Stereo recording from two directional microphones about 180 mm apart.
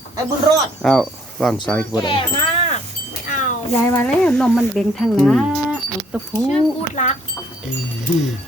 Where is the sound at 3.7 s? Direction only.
15° left (ahead or behind); by 6.2 s 5° right (ahead or behind).